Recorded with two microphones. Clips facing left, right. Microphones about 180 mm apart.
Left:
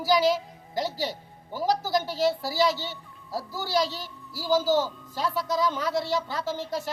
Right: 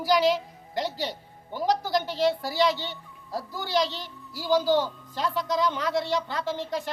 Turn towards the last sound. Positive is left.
turn(degrees=5)  # may be behind; listen again after turning